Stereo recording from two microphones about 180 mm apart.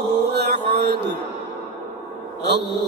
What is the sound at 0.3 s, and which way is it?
Mantra, 65° right (ahead or behind).